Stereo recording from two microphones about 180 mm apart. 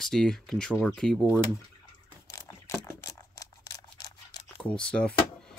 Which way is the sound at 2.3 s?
15° left (ahead or behind).